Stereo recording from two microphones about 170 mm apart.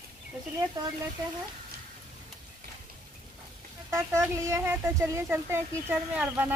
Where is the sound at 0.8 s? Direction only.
20° right (ahead or behind).